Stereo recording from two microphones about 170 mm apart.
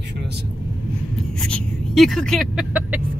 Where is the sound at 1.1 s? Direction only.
Centre (ahead or behind).